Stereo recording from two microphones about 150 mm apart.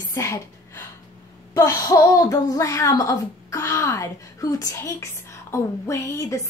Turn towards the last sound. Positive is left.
turn(degrees=20)  # may be behind; listen again after turning